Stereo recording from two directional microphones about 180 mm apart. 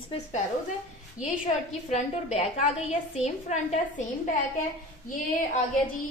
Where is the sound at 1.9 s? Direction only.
40° left (ahead or behind).